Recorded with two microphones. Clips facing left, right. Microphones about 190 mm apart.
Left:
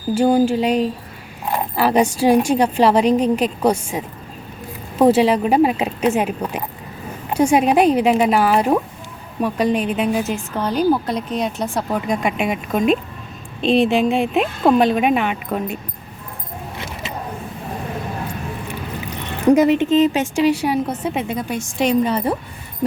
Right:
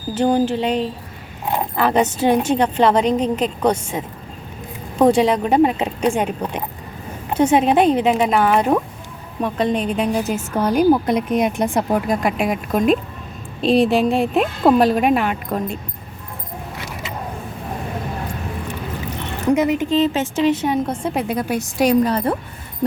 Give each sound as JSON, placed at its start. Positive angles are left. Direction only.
{"t": 0.1, "sound": "a woman's voice", "side_deg": 10}
{"t": 10.5, "sound": "a woman's voice", "side_deg": -10}
{"t": 12.0, "sound": "speech", "side_deg": 0}
{"t": 19.5, "sound": "a woman's voice", "side_deg": 35}